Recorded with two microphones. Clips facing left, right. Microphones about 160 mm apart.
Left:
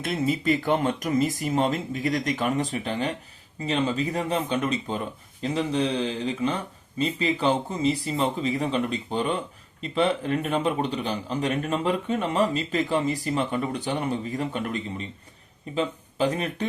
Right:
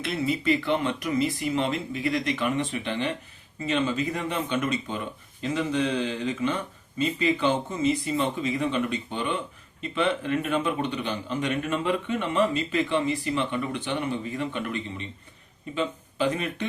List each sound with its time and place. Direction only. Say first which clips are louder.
0.0 s a man's voice: left 1 dB; 45° left (ahead or behind)